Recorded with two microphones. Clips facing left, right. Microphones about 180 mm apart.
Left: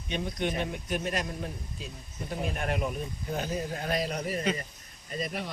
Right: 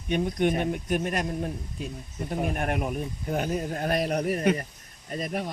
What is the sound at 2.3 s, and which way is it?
Speech, 50° right (ahead or behind).